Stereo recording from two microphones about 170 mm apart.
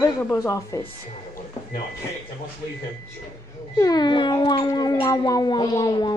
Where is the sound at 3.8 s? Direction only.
25° left (ahead or behind).